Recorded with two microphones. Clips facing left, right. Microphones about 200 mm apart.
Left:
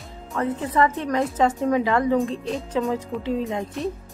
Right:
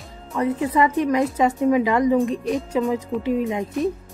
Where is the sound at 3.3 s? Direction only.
10° right (ahead or behind).